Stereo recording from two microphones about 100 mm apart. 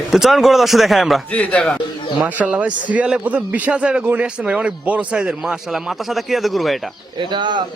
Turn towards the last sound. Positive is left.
turn(degrees=-50)  # may be behind; listen again after turning